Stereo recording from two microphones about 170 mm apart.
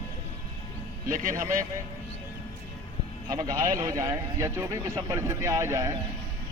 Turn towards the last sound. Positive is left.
turn(degrees=-20)  # may be behind; listen again after turning